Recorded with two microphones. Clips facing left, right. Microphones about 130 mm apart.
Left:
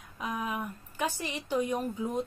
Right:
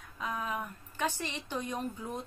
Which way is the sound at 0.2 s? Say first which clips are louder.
Left 2 dB; 15° left (ahead or behind).